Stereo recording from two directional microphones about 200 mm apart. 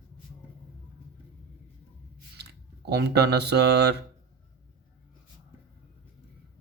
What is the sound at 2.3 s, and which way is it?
Speech, 55° right (ahead or behind).